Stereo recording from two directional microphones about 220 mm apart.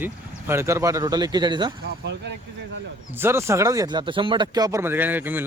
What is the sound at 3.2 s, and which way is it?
A man's voice, 10° right (ahead or behind).